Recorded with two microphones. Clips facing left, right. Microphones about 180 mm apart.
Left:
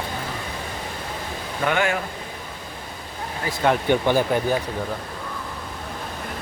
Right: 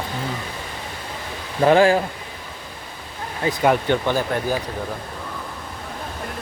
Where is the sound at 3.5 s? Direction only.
25° right (ahead or behind).